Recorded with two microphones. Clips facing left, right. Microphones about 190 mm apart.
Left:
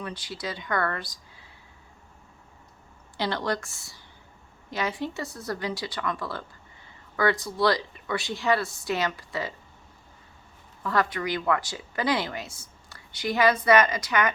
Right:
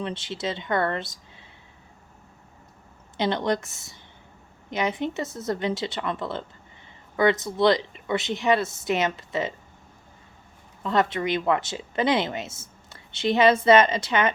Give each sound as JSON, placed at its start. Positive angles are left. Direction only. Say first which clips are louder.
{"t": 0.0, "sound": "speech", "louder": "right 5 dB", "side_deg": -25}
{"t": 3.2, "sound": "speech", "louder": "right 4 dB", "side_deg": -20}
{"t": 10.8, "sound": "speech", "louder": "right 3 dB", "side_deg": -25}